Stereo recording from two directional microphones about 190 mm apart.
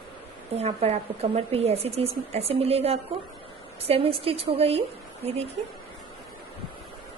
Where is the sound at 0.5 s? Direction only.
35° right (ahead or behind).